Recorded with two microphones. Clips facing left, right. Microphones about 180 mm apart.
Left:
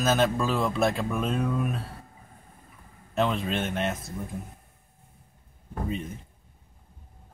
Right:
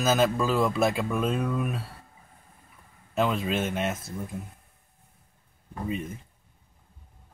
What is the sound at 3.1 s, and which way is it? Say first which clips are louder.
Speech: right 1 dB; 5° right (ahead or behind).